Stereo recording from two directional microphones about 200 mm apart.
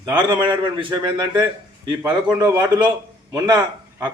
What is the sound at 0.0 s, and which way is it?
A man's voice, 20° right (ahead or behind).